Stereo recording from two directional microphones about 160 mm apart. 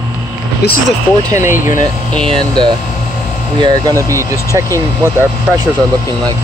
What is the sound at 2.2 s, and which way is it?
Speech, 30° right (ahead or behind).